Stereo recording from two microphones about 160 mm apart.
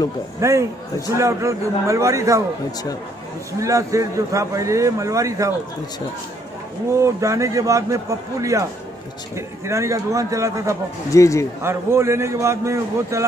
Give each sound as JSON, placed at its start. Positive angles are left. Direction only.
{"t": 0.4, "sound": "a man's voice", "side_deg": -20}
{"t": 3.5, "sound": "a man's voice", "side_deg": -20}
{"t": 6.9, "sound": "a man's voice", "side_deg": -20}
{"t": 9.7, "sound": "a man's voice", "side_deg": -20}
{"t": 11.1, "sound": "speech", "side_deg": 20}
{"t": 11.6, "sound": "a man's voice", "side_deg": -15}